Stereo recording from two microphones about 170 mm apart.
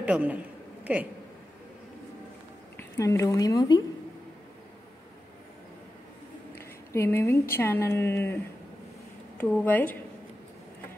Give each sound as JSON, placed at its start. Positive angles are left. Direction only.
{"t": 0.0, "sound": "a man's voice", "side_deg": -10}
{"t": 2.8, "sound": "speech", "side_deg": 15}
{"t": 6.9, "sound": "speech", "side_deg": 15}
{"t": 9.4, "sound": "speech", "side_deg": 10}